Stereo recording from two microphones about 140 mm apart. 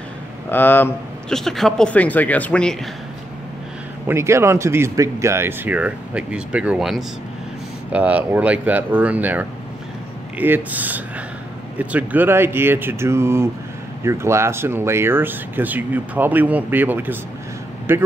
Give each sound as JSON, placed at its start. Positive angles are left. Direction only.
{"t": 0.5, "sound": "speech", "side_deg": 15}
{"t": 1.3, "sound": "speech", "side_deg": 0}
{"t": 4.1, "sound": "speech", "side_deg": -20}